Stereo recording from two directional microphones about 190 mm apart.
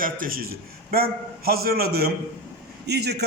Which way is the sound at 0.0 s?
50° right (ahead or behind).